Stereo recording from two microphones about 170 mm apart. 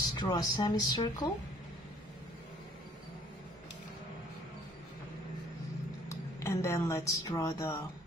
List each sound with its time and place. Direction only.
0.1 s speech: 25° left (ahead or behind)
6.0 s speech: 15° left (ahead or behind)